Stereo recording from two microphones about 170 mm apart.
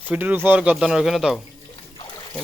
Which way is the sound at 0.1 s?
10° right (ahead or behind).